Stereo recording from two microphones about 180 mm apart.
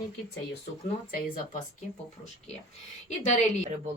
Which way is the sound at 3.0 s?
40° left (ahead or behind).